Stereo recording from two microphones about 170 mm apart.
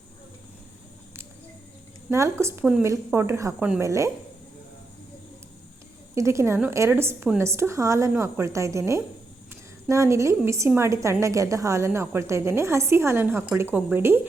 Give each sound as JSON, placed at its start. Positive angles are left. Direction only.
{"t": 2.0, "sound": "a woman's voice", "side_deg": -15}
{"t": 6.1, "sound": "a woman's voice", "side_deg": -15}